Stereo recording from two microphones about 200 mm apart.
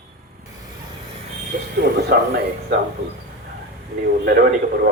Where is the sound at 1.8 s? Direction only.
50° right (ahead or behind).